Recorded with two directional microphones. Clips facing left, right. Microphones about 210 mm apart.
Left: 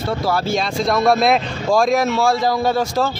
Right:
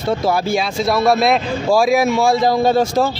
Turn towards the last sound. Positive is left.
turn(degrees=-20)  # may be behind; listen again after turning